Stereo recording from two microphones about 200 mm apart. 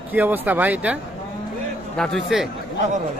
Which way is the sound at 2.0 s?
Centre (ahead or behind).